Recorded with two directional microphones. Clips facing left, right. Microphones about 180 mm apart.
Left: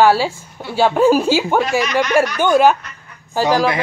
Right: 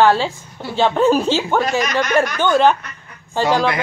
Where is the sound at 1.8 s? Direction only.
45° right (ahead or behind).